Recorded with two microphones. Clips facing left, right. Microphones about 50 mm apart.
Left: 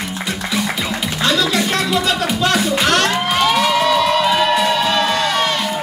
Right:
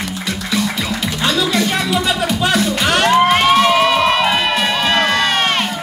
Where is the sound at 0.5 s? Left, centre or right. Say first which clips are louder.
Right 2 dB; centre.